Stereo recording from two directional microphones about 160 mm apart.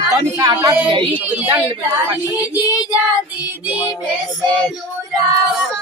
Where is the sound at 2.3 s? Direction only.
10° right (ahead or behind).